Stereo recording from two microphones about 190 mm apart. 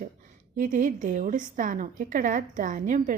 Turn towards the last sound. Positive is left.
turn(degrees=-40)  # may be behind; listen again after turning